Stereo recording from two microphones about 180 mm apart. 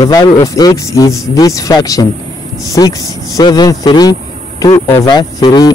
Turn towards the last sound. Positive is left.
turn(degrees=20)  # may be behind; listen again after turning